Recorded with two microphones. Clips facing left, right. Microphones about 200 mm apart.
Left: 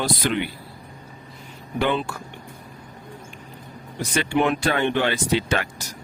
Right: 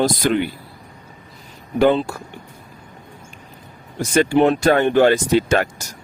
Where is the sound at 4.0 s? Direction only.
40° right (ahead or behind).